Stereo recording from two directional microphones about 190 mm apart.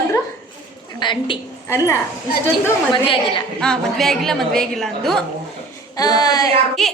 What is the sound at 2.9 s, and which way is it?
Speech, 25° left (ahead or behind).